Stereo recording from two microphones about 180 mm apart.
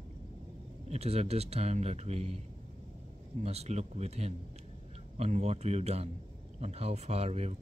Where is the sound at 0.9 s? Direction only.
35° right (ahead or behind).